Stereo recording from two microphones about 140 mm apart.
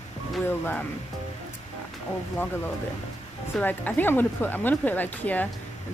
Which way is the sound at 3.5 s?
10° left (ahead or behind).